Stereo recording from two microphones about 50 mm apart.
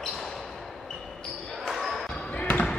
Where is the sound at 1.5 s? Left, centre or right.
Centre.